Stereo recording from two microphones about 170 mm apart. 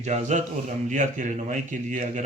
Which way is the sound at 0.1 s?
45° right (ahead or behind).